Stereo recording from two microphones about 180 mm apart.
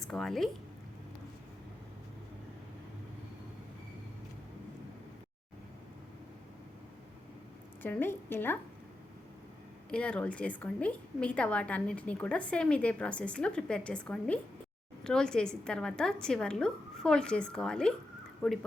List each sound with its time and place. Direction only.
0.0 s a woman's voice: centre (ahead or behind)
7.8 s a woman's voice: 10° left (ahead or behind)
9.9 s a woman's voice: 5° left (ahead or behind)